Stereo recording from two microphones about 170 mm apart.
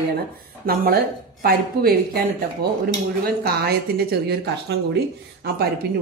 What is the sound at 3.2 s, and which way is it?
A woman's voice, 65° right (ahead or behind).